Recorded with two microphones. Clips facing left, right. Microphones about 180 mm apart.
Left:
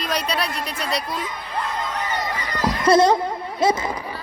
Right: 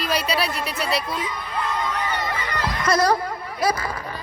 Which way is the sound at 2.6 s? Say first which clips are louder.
Left 6 dB; 30° left (ahead or behind).